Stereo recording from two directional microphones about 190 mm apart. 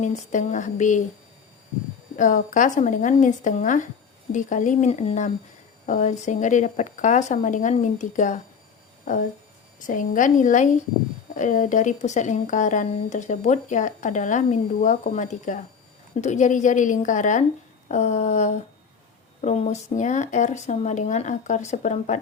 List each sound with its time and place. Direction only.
0.0 s speech: 40° left (ahead or behind)
2.1 s speech: 45° left (ahead or behind)
9.8 s a woman's voice: 45° left (ahead or behind)